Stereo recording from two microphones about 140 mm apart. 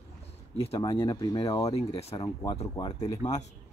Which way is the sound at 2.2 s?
35° left (ahead or behind).